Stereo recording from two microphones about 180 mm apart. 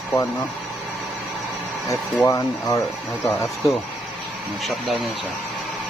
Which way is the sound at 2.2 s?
20° left (ahead or behind).